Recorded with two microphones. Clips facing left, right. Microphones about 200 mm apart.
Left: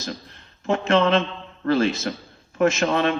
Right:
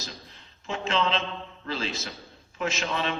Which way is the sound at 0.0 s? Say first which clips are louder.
Left 9 dB; 60° left (ahead or behind).